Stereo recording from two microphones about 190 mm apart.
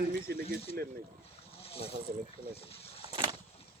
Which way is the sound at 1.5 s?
30° left (ahead or behind).